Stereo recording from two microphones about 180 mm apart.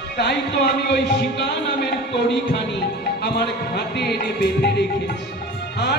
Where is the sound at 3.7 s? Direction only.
60° left (ahead or behind).